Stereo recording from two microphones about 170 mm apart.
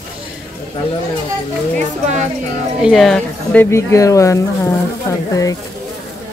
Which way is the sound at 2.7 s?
Centre (ahead or behind).